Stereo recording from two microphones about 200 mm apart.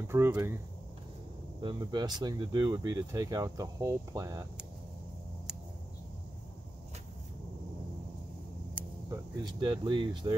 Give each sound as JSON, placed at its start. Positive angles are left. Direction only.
{"t": 0.0, "sound": "speech", "side_deg": -10}
{"t": 1.6, "sound": "speech", "side_deg": -25}
{"t": 8.7, "sound": "speech", "side_deg": -15}